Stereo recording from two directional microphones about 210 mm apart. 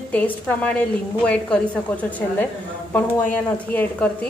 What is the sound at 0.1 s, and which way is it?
A woman's voice, 5° left (ahead or behind).